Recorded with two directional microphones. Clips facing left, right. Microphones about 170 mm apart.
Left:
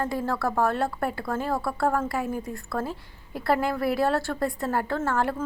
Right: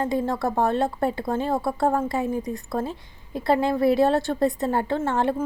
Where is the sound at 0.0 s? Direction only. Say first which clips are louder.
Right 3 dB; 20° right (ahead or behind).